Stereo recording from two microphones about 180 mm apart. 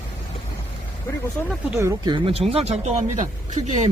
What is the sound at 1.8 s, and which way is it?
Speech, 20° right (ahead or behind).